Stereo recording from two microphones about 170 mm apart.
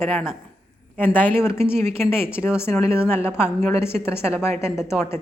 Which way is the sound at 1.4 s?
15° left (ahead or behind).